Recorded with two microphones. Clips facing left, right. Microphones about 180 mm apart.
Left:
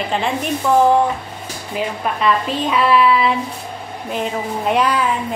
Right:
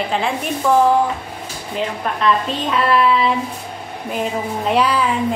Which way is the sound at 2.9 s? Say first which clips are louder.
Left 1 dB; 5° left (ahead or behind).